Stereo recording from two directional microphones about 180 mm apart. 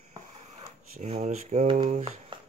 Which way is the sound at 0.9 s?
35° right (ahead or behind).